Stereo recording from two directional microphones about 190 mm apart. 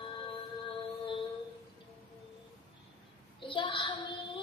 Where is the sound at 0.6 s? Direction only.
25° left (ahead or behind).